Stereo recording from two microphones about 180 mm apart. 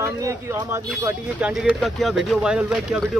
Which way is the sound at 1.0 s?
5° right (ahead or behind).